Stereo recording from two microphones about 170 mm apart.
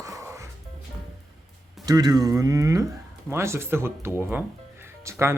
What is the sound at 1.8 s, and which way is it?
Speech, 20° right (ahead or behind).